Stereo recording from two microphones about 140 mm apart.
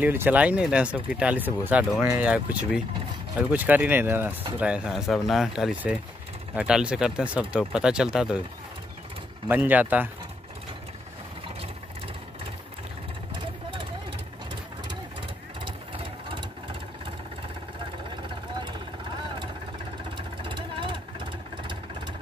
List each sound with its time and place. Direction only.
0.0 s speech: 15° right (ahead or behind)
9.7 s speech: 10° right (ahead or behind)
13.3 s vehicle: 35° right (ahead or behind)
15.6 s engine: 40° right (ahead or behind)
18.1 s vehicle: 35° right (ahead or behind)